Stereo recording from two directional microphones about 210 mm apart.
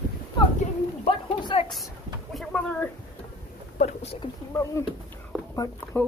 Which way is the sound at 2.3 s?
5° left (ahead or behind).